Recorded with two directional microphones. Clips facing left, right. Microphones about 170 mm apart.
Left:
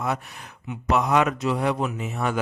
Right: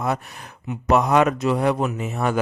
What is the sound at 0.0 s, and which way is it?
Speech, 40° right (ahead or behind).